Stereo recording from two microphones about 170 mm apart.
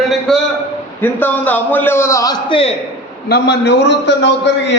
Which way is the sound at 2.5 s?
35° left (ahead or behind).